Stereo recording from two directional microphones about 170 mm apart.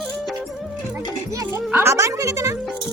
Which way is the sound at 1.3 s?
15° right (ahead or behind).